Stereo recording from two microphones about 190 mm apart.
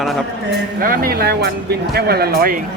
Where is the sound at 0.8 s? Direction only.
50° right (ahead or behind).